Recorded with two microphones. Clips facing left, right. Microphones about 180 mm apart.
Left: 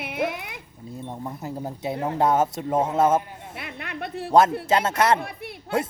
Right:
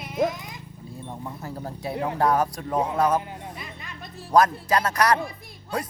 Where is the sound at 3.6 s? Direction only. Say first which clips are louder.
Left 6 dB; 65° left (ahead or behind).